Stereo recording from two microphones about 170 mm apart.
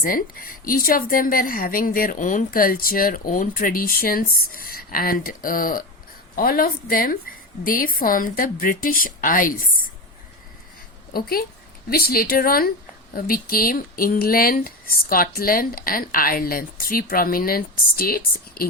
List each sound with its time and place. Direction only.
0.0 s a woman's voice: 55° left (ahead or behind)
11.1 s a woman's voice: 60° left (ahead or behind)